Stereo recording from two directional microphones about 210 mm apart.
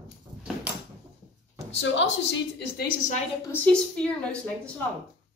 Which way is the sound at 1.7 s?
60° left (ahead or behind).